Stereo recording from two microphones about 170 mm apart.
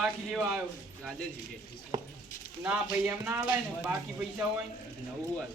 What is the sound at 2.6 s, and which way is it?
Speech, 10° right (ahead or behind).